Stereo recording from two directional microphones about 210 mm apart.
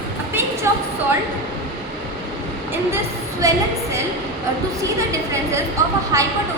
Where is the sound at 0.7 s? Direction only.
15° right (ahead or behind).